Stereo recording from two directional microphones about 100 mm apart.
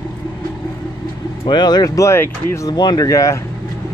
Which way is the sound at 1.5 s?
45° left (ahead or behind).